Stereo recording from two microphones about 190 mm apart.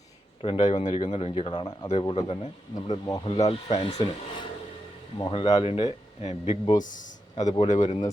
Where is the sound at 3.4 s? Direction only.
30° left (ahead or behind).